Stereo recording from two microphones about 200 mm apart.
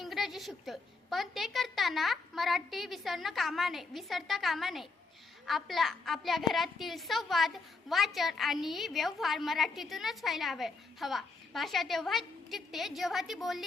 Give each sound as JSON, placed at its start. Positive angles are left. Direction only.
{"t": 0.0, "sound": "a woman's voice", "side_deg": 0}